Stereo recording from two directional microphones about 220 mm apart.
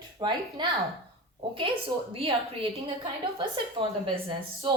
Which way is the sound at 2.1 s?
25° right (ahead or behind).